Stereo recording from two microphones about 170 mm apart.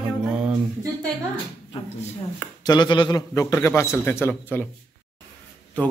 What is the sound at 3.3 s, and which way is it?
A man's voice, 15° left (ahead or behind).